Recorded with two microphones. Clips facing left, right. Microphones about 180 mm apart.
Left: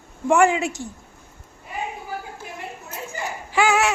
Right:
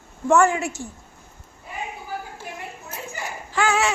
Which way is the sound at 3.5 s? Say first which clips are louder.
Left 2 dB; 10° left (ahead or behind).